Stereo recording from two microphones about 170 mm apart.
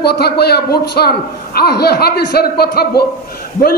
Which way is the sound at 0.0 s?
70° left (ahead or behind).